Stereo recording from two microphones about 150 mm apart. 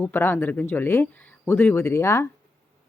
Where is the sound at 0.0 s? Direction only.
15° left (ahead or behind).